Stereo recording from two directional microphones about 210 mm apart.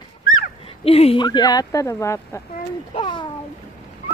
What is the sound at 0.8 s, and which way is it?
Speech, 30° left (ahead or behind).